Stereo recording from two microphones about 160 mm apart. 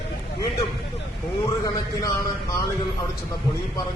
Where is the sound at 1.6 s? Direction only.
20° left (ahead or behind).